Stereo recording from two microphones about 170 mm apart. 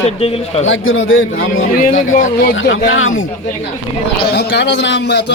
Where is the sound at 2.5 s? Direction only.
90° left.